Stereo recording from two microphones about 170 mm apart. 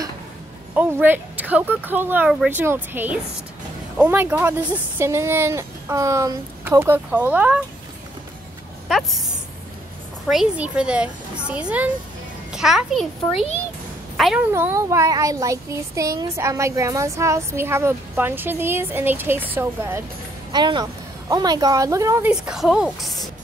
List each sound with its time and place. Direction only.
0.7 s speech: 10° right (ahead or behind)
8.8 s speech: centre (ahead or behind)
10.2 s a woman's voice: 5° right (ahead or behind)
14.5 s speech: 15° right (ahead or behind)
20.5 s a woman's voice: 25° right (ahead or behind)
22.3 s a woman's voice: 5° right (ahead or behind)